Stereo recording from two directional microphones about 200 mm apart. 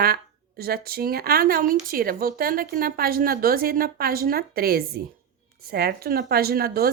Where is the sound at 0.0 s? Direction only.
50° right (ahead or behind).